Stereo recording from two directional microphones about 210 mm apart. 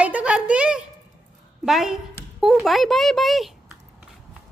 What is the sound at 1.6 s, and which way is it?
Speech, centre (ahead or behind).